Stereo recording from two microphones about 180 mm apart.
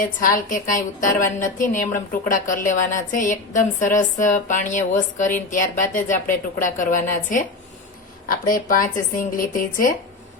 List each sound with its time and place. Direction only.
0.0 s a woman's voice: 50° left (ahead or behind)